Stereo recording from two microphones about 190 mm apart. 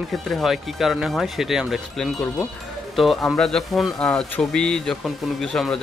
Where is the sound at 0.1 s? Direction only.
Centre (ahead or behind).